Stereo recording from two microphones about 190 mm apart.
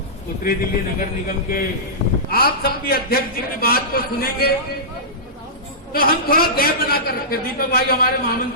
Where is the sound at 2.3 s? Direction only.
50° left (ahead or behind).